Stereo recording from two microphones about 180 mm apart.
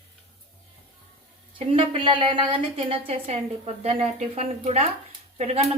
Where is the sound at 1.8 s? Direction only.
30° right (ahead or behind).